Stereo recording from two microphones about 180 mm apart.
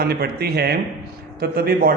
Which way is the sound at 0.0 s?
60° right (ahead or behind).